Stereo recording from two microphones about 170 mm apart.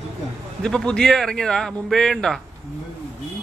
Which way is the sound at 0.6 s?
5° left (ahead or behind).